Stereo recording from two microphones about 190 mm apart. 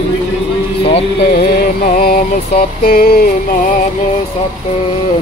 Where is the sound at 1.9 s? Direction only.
50° left (ahead or behind).